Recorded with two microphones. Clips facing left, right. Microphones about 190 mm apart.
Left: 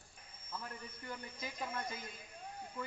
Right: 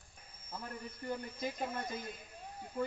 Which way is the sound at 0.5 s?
35° right (ahead or behind).